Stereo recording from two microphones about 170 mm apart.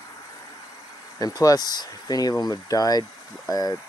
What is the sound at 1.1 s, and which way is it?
Speech, 20° left (ahead or behind).